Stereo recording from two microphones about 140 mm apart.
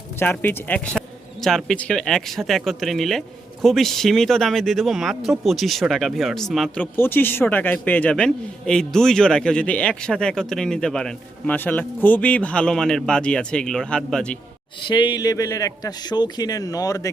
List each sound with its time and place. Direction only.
0.2 s a man's voice: 15° left (ahead or behind)
0.9 s speech: centre (ahead or behind)
6.9 s a man's voice: 15° left (ahead or behind)
14.8 s a man's voice: 35° left (ahead or behind)